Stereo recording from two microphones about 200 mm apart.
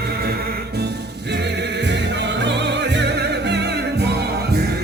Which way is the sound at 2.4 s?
60° right (ahead or behind).